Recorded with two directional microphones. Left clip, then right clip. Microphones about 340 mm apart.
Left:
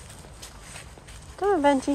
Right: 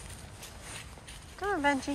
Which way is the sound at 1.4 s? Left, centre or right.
Centre.